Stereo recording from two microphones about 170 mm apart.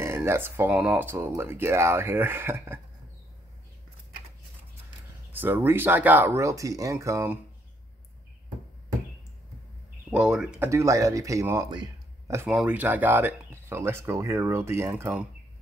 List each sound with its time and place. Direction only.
0.0 s speech: 15° right (ahead or behind)
5.3 s speech: 10° right (ahead or behind)
10.1 s speech: 5° right (ahead or behind)
10.7 s speech: 15° right (ahead or behind)
12.4 s speech: 5° right (ahead or behind)